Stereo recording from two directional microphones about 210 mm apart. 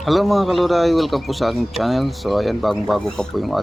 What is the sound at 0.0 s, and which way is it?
A man's voice, centre (ahead or behind).